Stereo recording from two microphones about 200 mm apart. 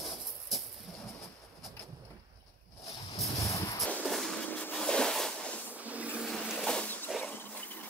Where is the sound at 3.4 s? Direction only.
15° left (ahead or behind).